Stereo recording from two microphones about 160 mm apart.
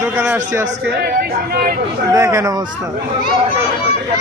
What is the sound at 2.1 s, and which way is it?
Speech, 20° right (ahead or behind).